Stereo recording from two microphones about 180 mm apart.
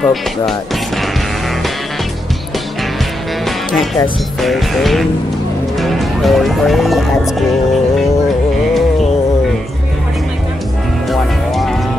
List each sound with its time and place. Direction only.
0.0 s music: centre (ahead or behind)
3.4 s music: centre (ahead or behind)
11.1 s music: centre (ahead or behind)